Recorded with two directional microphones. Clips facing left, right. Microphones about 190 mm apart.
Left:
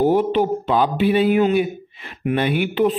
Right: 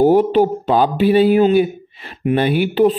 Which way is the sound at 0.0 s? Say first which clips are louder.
Right 5 dB; 40° right (ahead or behind).